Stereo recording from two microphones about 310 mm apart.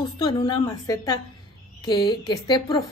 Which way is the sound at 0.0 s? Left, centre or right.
Centre.